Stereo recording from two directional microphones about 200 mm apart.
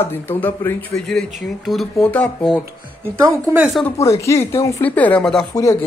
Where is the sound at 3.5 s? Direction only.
10° right (ahead or behind).